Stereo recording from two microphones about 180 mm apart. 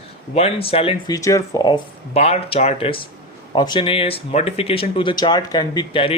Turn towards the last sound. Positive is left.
turn(degrees=30)  # may be behind; listen again after turning